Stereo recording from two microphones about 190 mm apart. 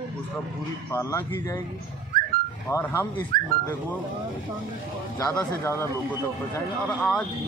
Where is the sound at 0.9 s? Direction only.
15° left (ahead or behind).